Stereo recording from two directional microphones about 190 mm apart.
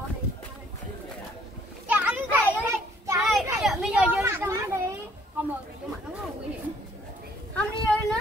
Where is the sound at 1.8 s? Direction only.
10° right (ahead or behind).